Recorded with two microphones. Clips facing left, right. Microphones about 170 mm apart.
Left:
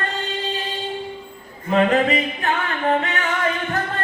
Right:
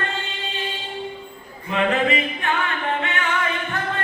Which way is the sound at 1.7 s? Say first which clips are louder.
Left 3 dB; 40° left (ahead or behind).